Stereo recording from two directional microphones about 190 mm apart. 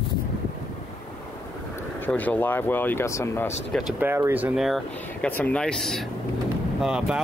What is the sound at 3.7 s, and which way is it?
Speech, centre (ahead or behind).